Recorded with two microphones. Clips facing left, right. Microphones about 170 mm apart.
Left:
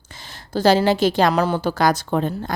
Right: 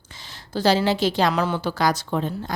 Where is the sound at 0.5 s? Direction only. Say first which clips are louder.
Left 4 dB; 45° left (ahead or behind).